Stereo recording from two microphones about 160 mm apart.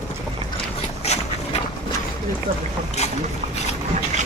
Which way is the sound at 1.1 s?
40° left (ahead or behind).